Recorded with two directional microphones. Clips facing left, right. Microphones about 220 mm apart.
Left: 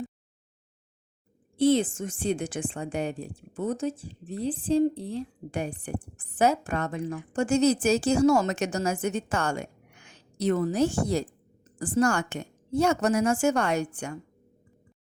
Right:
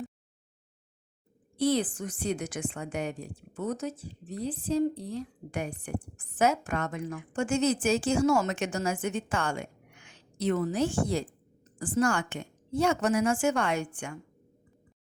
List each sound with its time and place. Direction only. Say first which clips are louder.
1.5 s a woman's voice: left 5 dB; 25° left (ahead or behind)